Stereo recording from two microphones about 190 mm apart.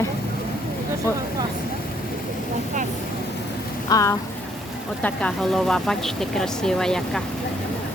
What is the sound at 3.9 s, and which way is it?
Speech, 15° left (ahead or behind).